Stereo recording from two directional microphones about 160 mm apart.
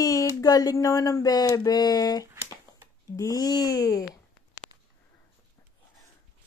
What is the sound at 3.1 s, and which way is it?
Speech, 20° left (ahead or behind).